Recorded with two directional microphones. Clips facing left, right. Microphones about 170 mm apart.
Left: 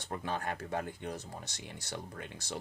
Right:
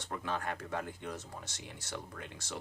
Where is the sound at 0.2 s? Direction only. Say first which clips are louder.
Even; 35° left (ahead or behind).